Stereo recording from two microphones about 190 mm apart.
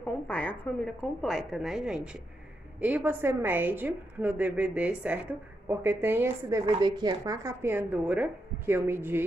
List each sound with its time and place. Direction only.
0.0 s a woman's voice: 5° left (ahead or behind); by 6.6 s 10° right (ahead or behind)
6.6 s a woman's voice: 20° right (ahead or behind)